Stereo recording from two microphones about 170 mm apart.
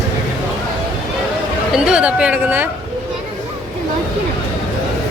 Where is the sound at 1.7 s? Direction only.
5° right (ahead or behind).